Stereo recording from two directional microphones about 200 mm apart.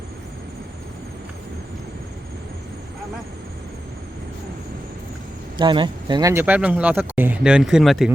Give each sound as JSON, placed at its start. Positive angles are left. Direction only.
{"t": 5.5, "sound": "speech", "side_deg": -25}